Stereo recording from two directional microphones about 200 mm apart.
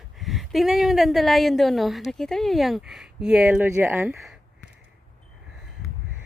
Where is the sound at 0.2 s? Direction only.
Centre (ahead or behind).